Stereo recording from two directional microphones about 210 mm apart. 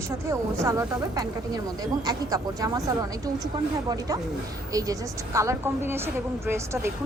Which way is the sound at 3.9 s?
15° right (ahead or behind).